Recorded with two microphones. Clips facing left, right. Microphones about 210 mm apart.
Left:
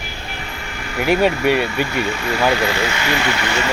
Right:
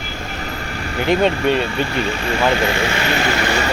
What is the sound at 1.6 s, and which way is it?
Speech, 35° right (ahead or behind).